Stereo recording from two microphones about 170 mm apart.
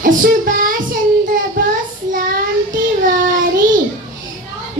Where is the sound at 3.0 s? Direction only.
50° right (ahead or behind).